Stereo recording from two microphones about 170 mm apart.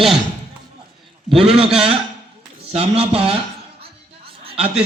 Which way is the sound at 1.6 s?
35° right (ahead or behind).